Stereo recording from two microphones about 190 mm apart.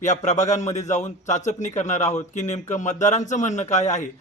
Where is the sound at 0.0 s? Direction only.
40° left (ahead or behind).